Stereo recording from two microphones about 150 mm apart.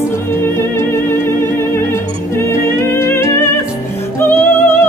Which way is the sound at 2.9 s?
15° left (ahead or behind).